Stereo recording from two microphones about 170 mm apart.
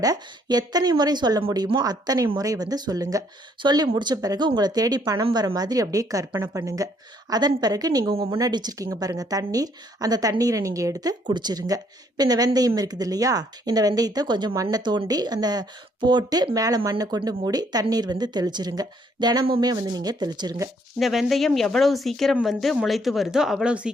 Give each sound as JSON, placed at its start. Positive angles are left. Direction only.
{"t": 0.0, "sound": "a woman's voice", "side_deg": -20}
{"t": 21.0, "sound": "speech", "side_deg": 0}